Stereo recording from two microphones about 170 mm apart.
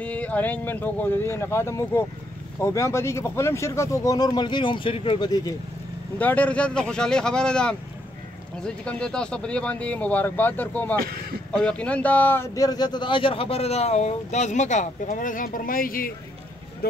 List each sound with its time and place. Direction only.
0.0 s speech: 10° left (ahead or behind)
6.1 s speech: 10° left (ahead or behind)
8.8 s a man's voice: 5° left (ahead or behind); by 16.1 s 55° left (ahead or behind)